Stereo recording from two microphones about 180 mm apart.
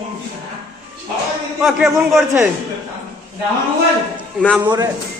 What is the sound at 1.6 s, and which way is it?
Speech, centre (ahead or behind).